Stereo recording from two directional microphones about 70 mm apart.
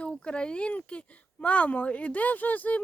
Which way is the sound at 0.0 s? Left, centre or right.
Centre.